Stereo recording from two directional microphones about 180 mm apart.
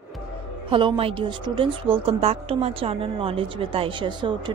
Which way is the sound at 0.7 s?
30° right (ahead or behind).